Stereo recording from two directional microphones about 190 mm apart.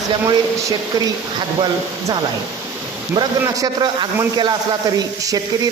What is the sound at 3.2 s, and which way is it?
A man's voice, 20° right (ahead or behind).